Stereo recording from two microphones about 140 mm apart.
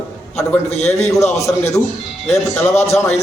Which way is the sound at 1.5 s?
10° left (ahead or behind).